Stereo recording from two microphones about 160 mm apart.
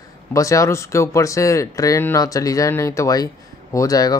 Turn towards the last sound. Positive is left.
turn(degrees=20)  # may be behind; listen again after turning